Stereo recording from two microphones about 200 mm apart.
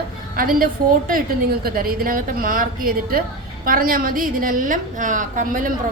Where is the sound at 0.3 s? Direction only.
45° right (ahead or behind).